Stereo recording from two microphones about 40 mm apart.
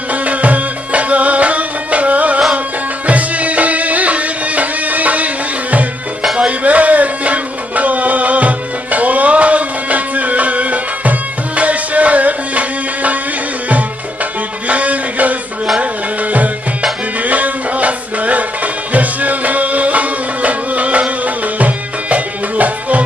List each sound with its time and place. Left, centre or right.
0.1 s music: right
6.5 s music: right
14.7 s a sound: right
15.8 s music: right